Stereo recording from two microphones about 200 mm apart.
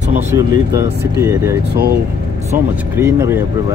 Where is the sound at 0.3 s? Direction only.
15° right (ahead or behind).